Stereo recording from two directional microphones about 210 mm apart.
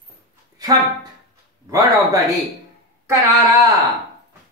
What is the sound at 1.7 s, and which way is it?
A man's voice, 15° right (ahead or behind).